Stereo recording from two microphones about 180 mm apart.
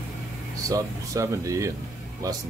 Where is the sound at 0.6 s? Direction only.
20° right (ahead or behind).